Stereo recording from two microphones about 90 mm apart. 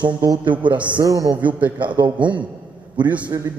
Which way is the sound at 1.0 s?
40° right (ahead or behind).